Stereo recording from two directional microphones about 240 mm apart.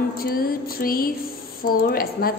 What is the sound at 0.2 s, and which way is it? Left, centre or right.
A woman's voice, left.